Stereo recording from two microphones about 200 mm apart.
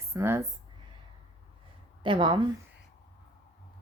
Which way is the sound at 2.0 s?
25° right (ahead or behind).